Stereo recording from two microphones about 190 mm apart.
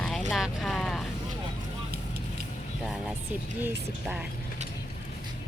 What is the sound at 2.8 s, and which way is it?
Speech, centre (ahead or behind).